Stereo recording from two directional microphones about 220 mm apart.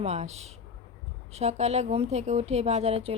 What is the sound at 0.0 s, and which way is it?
Speech, 30° right (ahead or behind).